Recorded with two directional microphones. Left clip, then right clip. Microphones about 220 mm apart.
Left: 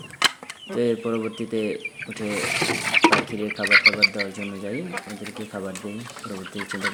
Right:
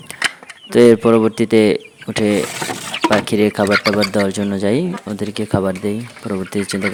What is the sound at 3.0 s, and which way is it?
Speech, 50° right (ahead or behind).